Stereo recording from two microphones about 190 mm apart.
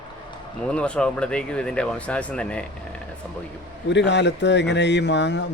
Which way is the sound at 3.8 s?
65° left (ahead or behind).